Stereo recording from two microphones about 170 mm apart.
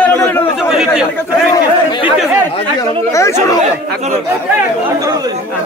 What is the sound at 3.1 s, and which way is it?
Speech, 15° left (ahead or behind).